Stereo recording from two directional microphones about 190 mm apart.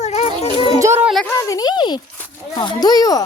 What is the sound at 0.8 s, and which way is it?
Speech, 15° right (ahead or behind).